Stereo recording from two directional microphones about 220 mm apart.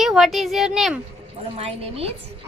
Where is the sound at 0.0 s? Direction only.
Centre (ahead or behind).